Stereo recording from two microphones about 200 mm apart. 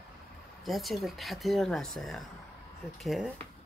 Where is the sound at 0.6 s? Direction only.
Centre (ahead or behind).